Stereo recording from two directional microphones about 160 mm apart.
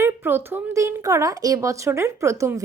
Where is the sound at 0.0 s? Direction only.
10° right (ahead or behind).